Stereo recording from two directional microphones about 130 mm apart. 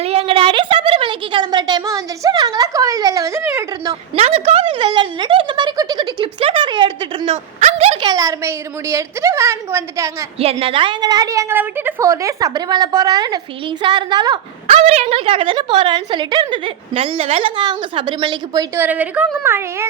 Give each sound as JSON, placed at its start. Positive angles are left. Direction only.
{"t": 0.0, "sound": "a sound", "side_deg": -50}
{"t": 4.1, "sound": "speech", "side_deg": -50}
{"t": 6.4, "sound": "a sound", "side_deg": -40}
{"t": 7.3, "sound": "speech", "side_deg": -50}
{"t": 8.0, "sound": "a woman's voice", "side_deg": -25}
{"t": 10.4, "sound": "a woman's voice", "side_deg": -45}
{"t": 14.7, "sound": "a woman's voice", "side_deg": -55}
{"t": 18.8, "sound": "a woman's voice", "side_deg": -10}